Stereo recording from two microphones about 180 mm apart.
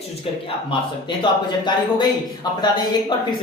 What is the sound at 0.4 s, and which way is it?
Speech, 25° left (ahead or behind).